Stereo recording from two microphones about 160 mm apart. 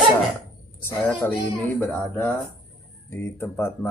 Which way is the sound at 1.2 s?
15° left (ahead or behind).